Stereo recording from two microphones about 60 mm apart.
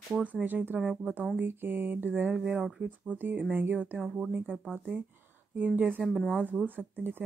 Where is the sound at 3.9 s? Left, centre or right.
Centre.